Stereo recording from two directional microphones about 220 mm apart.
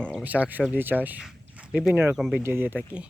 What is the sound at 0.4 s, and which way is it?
Speech, 5° right (ahead or behind).